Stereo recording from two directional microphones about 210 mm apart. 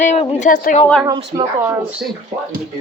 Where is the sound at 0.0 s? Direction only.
30° left (ahead or behind).